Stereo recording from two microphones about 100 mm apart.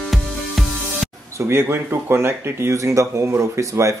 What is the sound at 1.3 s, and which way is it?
Speech, 30° right (ahead or behind).